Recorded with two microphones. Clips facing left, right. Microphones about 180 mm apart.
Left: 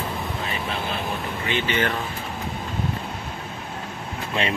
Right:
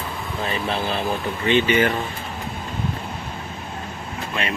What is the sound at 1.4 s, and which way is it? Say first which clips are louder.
Speech: right 7 dB; 15° right (ahead or behind).